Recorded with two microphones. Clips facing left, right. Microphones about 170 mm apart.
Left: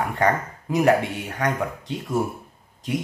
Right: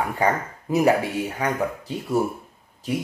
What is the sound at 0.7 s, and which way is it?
Speech, 10° right (ahead or behind).